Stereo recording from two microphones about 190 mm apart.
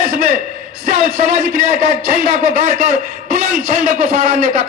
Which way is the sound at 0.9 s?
45° right (ahead or behind).